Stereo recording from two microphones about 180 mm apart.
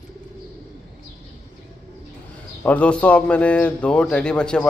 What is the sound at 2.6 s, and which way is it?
A man's voice, 5° left (ahead or behind).